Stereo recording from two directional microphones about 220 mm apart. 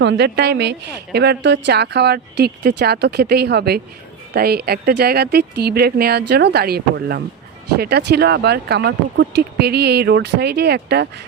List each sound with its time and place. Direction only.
0.0 s speech: 50° right (ahead or behind)